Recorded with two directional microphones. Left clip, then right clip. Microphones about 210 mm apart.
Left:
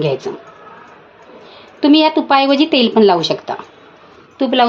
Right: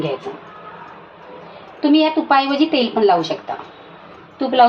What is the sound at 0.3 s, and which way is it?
Speech, 55° left (ahead or behind).